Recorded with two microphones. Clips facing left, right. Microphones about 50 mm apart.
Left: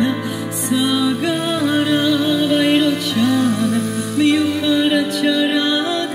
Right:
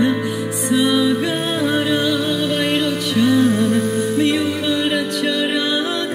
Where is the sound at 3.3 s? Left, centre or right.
Right.